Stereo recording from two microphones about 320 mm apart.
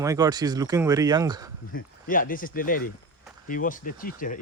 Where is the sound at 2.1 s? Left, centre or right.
Left.